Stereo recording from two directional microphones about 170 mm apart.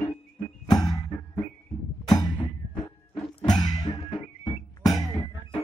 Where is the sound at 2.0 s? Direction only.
25° left (ahead or behind).